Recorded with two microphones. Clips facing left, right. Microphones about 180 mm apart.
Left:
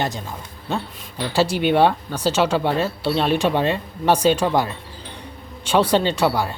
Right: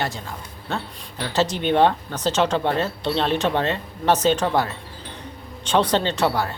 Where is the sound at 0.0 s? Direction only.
15° left (ahead or behind).